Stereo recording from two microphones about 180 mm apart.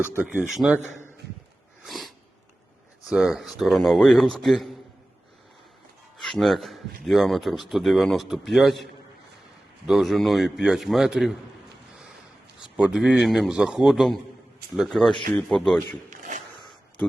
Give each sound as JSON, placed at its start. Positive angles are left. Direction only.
{"t": 0.2, "sound": "speech", "side_deg": -5}
{"t": 0.8, "sound": "a man's voice", "side_deg": 15}
{"t": 1.8, "sound": "a sound", "side_deg": 0}
{"t": 3.1, "sound": "a man's voice", "side_deg": 0}
{"t": 6.2, "sound": "a man's voice", "side_deg": 0}
{"t": 12.7, "sound": "a man's voice", "side_deg": -5}
{"t": 16.0, "sound": "a sound", "side_deg": -45}